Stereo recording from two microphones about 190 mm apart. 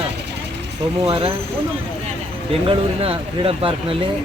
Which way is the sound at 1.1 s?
30° right (ahead or behind).